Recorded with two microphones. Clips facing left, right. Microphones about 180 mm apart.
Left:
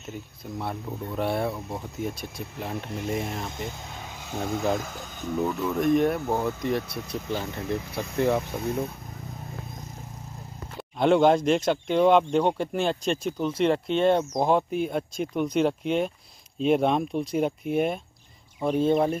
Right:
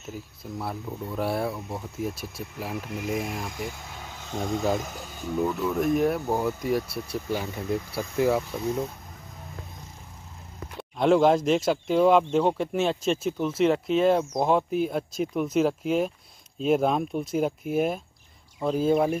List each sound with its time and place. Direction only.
0.0 s speech: centre (ahead or behind)
3.4 s speech: 20° left (ahead or behind)
4.3 s speech: 5° left (ahead or behind)
10.8 s speech: centre (ahead or behind)